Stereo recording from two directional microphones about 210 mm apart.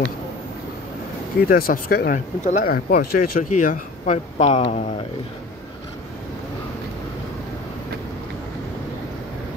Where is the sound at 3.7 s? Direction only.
35° left (ahead or behind).